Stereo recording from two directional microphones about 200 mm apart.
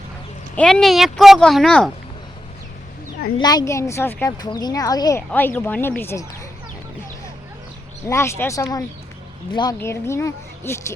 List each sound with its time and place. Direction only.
0.5 s speech: 5° left (ahead or behind)
3.3 s speech: 20° left (ahead or behind)
8.0 s speech: 15° left (ahead or behind)